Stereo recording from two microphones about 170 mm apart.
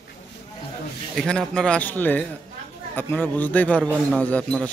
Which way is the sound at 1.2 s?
5° left (ahead or behind).